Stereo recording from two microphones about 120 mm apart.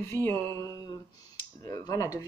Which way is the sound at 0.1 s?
20° left (ahead or behind).